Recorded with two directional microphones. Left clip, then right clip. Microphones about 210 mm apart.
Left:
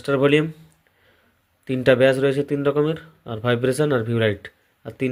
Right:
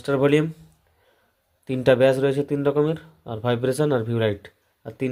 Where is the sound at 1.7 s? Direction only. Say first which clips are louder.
Left 1 dB; 5° left (ahead or behind).